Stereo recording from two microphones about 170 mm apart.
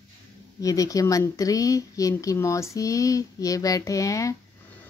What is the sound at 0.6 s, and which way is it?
Speech, 20° left (ahead or behind).